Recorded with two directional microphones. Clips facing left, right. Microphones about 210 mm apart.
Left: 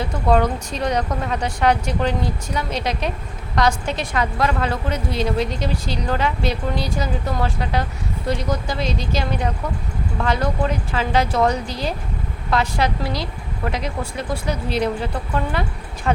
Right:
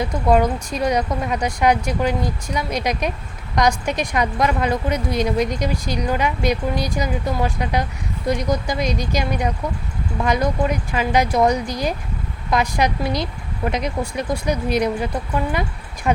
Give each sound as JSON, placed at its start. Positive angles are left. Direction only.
{"t": 0.0, "sound": "a woman's voice", "side_deg": -10}